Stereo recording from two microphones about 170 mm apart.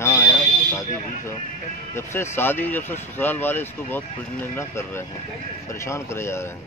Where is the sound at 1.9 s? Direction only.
15° left (ahead or behind).